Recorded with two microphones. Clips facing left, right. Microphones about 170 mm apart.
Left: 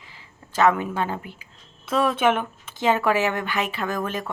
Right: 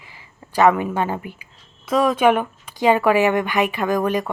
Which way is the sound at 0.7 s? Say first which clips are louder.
Right 4 dB; 10° right (ahead or behind).